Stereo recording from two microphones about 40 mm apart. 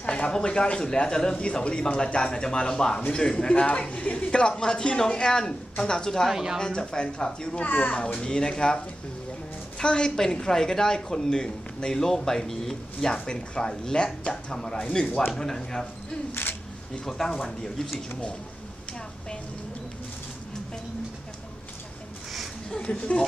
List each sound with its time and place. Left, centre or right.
0.0 s speech: left
3.5 s speech: left; by 6.2 s centre
6.3 s speech: centre
6.6 s speech: centre
7.6 s speech: left
7.9 s speech: left
8.2 s speech: centre
9.8 s speech: centre
13.2 s speech: left
16.4 s speech: left
17.4 s speech: centre
22.8 s speech: left